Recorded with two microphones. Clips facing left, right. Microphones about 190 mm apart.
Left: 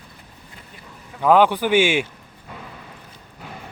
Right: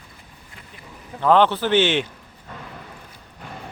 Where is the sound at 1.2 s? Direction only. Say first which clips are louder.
Left 1 dB; 10° left (ahead or behind).